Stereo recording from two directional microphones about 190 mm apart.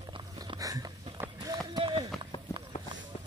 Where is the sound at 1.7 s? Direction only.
25° right (ahead or behind).